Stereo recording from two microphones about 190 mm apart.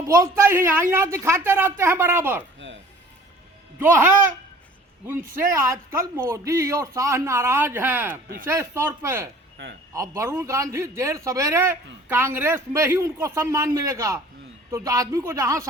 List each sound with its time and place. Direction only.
0.0 s speech: 15° right (ahead or behind)
2.6 s music: 75° right (ahead or behind)
5.0 s speech: 15° right (ahead or behind)